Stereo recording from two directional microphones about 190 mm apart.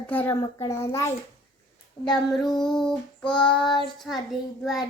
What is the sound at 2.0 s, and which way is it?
Child singing, centre (ahead or behind).